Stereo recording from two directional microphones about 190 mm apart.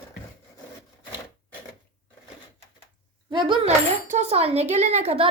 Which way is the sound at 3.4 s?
25° right (ahead or behind).